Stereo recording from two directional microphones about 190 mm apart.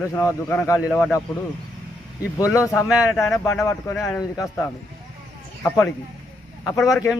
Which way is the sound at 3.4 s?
15° left (ahead or behind).